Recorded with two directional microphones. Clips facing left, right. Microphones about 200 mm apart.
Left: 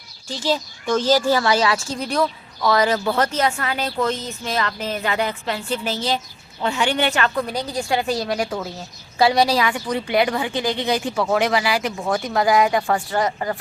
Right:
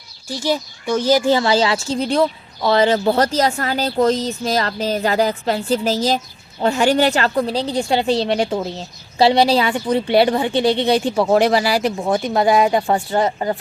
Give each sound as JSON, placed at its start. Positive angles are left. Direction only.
{"t": 0.3, "sound": "a woman's voice", "side_deg": -15}